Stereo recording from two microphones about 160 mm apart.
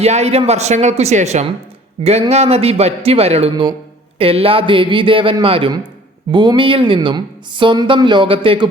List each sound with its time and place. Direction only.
0.0 s speech: 40° right (ahead or behind)
3.5 s speech: 30° right (ahead or behind)